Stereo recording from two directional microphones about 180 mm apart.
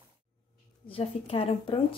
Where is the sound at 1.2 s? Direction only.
30° left (ahead or behind).